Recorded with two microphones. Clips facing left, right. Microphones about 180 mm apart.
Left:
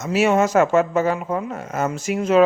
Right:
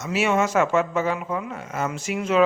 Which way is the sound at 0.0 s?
40° left (ahead or behind).